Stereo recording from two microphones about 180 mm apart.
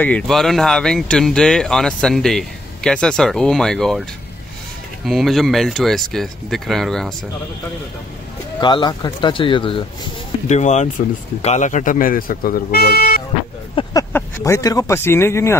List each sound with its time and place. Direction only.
0.0 s speech: 5° left (ahead or behind)
5.0 s speech: centre (ahead or behind)
8.5 s speech: 25° left (ahead or behind)
10.5 s speech: 40° left (ahead or behind); by 13.2 s 55° left (ahead or behind)
13.8 s a sound: 30° left (ahead or behind)
14.1 s speech: 15° left (ahead or behind)